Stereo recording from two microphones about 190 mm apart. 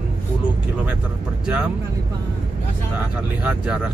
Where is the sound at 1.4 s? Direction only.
10° right (ahead or behind).